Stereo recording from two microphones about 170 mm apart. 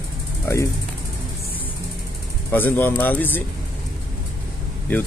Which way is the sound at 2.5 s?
10° left (ahead or behind).